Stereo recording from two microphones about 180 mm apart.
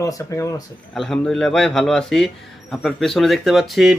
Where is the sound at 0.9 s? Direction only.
Centre (ahead or behind).